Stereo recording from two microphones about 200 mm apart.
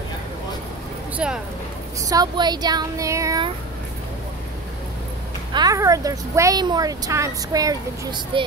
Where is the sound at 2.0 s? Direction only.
20° right (ahead or behind).